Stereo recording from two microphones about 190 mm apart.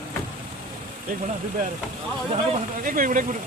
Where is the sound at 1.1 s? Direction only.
45° right (ahead or behind).